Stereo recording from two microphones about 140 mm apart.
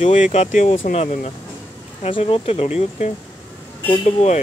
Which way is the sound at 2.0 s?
40° left (ahead or behind).